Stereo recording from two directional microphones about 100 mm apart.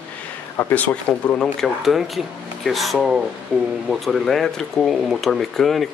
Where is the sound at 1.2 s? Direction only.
5° left (ahead or behind).